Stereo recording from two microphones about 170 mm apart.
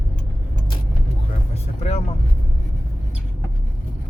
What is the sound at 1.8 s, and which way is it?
Vehicle, 40° left (ahead or behind).